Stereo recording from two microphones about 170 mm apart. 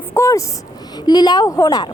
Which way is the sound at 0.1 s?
15° left (ahead or behind).